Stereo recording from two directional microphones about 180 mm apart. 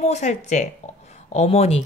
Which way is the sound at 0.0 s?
40° left (ahead or behind).